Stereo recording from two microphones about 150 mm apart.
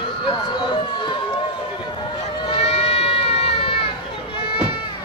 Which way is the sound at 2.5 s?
45° left (ahead or behind).